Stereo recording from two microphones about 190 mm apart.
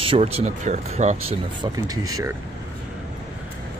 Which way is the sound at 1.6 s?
20° right (ahead or behind).